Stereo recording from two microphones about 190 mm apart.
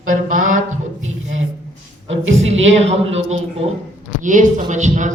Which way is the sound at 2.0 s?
85° right.